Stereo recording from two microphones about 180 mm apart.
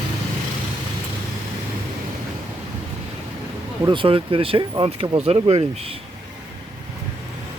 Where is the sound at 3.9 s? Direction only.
30° right (ahead or behind).